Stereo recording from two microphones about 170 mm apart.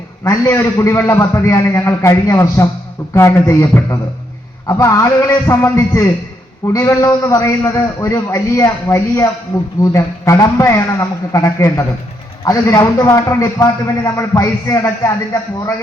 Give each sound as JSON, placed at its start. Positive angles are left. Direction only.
{"t": 0.3, "sound": "a man's voice", "side_deg": 15}